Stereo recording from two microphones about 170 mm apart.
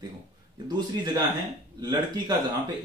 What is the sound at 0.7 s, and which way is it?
Speech, 25° right (ahead or behind).